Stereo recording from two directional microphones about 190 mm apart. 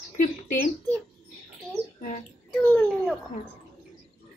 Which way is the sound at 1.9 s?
40° left (ahead or behind).